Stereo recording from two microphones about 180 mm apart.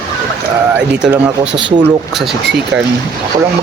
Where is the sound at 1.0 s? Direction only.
5° right (ahead or behind).